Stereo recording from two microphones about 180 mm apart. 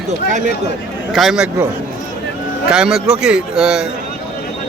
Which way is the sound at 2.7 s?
5° right (ahead or behind).